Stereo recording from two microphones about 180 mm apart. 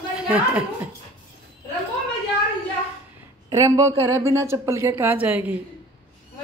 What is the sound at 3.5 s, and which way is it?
A woman's voice, 20° right (ahead or behind).